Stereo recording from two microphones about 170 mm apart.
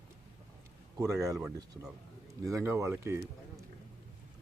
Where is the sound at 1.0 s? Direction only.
20° right (ahead or behind).